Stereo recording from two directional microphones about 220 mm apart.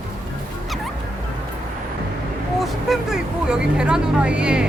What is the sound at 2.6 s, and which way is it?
Speech, centre (ahead or behind).